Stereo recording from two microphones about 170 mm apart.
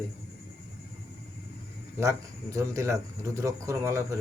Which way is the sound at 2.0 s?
20° right (ahead or behind).